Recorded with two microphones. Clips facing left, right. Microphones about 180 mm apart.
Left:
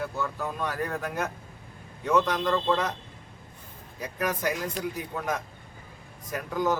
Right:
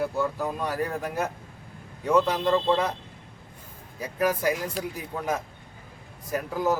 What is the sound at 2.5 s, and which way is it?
Speech, 25° right (ahead or behind).